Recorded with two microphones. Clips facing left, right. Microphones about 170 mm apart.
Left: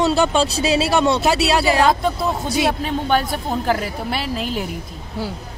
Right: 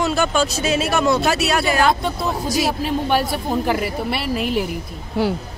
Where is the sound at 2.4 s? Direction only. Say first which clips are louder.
Even; 25° left (ahead or behind).